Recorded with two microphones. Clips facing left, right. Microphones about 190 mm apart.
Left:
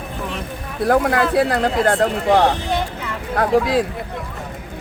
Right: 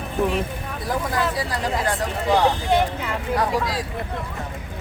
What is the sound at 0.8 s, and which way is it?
Speech, 65° left (ahead or behind).